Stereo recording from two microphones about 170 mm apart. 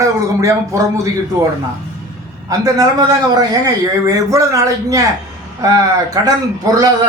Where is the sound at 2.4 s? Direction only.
20° right (ahead or behind).